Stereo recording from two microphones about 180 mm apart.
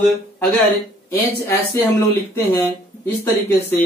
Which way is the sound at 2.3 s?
10° left (ahead or behind).